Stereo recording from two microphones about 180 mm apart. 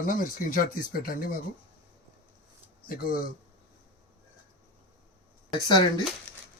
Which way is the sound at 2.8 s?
55° left (ahead or behind).